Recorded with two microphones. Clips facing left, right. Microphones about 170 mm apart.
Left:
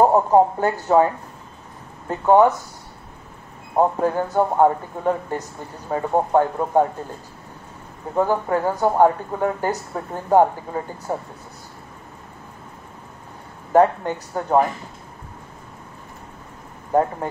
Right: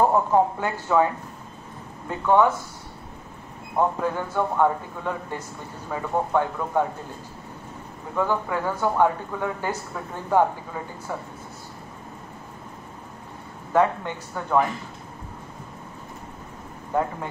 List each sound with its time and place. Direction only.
0.0 s speech: 35° left (ahead or behind)
3.7 s speech: 40° left (ahead or behind)
8.1 s speech: 40° left (ahead or behind)
13.7 s speech: 40° left (ahead or behind)